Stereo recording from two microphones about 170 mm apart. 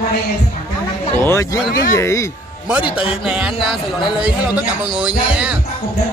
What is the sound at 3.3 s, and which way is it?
A man's voice, 5° right (ahead or behind).